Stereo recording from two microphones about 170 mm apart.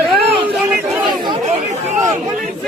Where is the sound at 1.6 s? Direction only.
45° right (ahead or behind).